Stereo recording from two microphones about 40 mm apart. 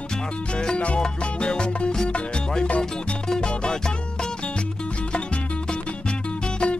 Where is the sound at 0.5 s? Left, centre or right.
Left.